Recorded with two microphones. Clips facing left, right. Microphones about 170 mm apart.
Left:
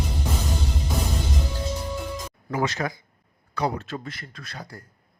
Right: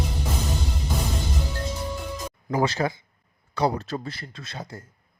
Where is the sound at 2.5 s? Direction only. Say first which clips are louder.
Right 3 dB; 30° right (ahead or behind).